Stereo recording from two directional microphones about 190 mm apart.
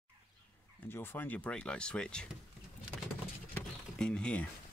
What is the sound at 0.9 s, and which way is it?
Speech, 10° left (ahead or behind).